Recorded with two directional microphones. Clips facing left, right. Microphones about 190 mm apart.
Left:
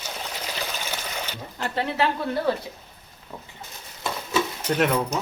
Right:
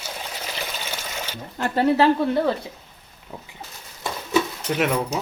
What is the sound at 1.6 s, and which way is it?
Speech, 45° right (ahead or behind).